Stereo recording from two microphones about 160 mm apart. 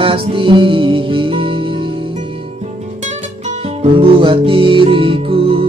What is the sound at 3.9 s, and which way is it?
Music, 35° right (ahead or behind).